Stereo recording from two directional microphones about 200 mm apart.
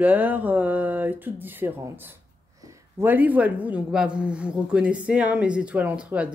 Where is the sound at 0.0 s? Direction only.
10° right (ahead or behind).